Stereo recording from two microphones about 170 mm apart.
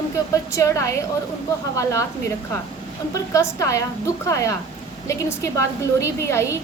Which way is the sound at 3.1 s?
20° left (ahead or behind).